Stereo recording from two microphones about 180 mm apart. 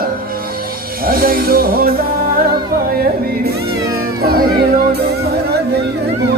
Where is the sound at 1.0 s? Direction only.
55° right (ahead or behind).